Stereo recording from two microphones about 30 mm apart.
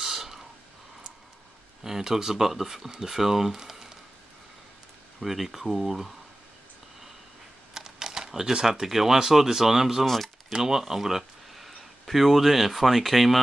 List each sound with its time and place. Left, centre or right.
0.0 s a sound: centre
1.8 s speech: centre
5.2 s speech: centre
7.7 s typing: centre
8.8 s speech: centre
10.0 s speech: centre
10.5 s speech: centre